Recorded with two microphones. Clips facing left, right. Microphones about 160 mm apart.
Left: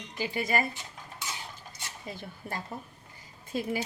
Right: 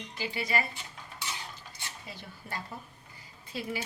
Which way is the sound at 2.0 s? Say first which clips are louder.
Left 5 dB; 45° left (ahead or behind).